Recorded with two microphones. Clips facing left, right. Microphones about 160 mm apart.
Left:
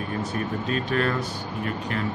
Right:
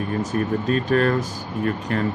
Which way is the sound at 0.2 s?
45° right (ahead or behind).